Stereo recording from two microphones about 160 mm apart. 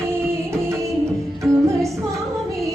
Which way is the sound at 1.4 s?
20° right (ahead or behind).